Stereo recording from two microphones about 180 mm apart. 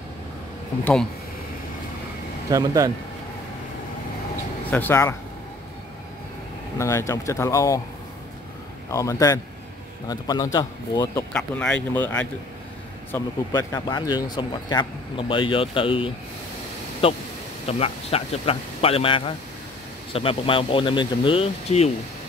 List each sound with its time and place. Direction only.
2.5 s speech: 20° right (ahead or behind)
4.6 s speech: 10° left (ahead or behind)
6.8 s speech: 15° left (ahead or behind)
8.9 s speech: 20° left (ahead or behind)
11.3 s speech: 5° left (ahead or behind); by 21.9 s 35° left (ahead or behind)